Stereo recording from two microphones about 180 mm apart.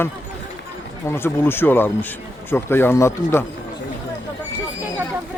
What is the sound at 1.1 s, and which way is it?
Speech, 15° left (ahead or behind).